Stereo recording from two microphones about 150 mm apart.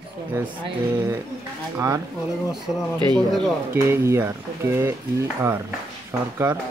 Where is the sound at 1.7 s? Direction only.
20° right (ahead or behind).